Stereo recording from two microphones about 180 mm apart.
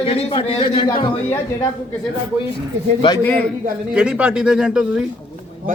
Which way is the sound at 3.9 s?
5° right (ahead or behind).